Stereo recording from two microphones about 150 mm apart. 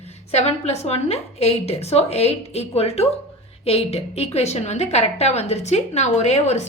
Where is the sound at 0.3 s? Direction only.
45° left (ahead or behind).